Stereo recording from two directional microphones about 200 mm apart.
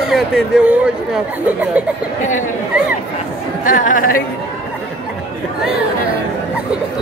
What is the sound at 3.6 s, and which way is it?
Chatter, 40° left (ahead or behind).